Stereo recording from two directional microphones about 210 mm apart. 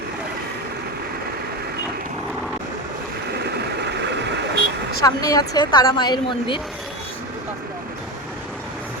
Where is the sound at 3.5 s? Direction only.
50° right (ahead or behind).